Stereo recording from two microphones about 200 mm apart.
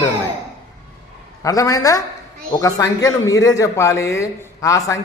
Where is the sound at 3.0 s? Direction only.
15° left (ahead or behind).